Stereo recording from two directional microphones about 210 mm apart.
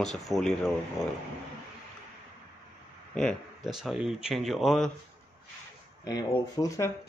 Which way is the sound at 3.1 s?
Centre (ahead or behind).